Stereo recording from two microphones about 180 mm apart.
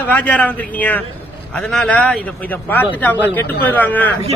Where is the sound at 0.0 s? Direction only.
10° left (ahead or behind).